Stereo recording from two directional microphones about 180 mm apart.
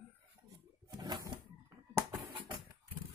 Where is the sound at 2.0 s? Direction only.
15° right (ahead or behind).